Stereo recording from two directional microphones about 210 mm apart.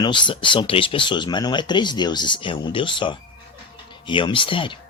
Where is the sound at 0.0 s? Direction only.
20° left (ahead or behind).